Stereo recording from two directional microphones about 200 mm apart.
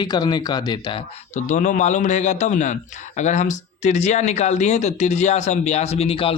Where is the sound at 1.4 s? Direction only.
35° left (ahead or behind).